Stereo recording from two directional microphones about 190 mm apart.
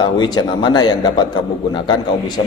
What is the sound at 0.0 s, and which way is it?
A man's voice, 25° left (ahead or behind).